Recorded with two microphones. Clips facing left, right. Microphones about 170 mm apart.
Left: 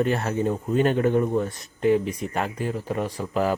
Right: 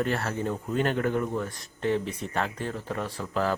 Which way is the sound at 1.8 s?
10° left (ahead or behind).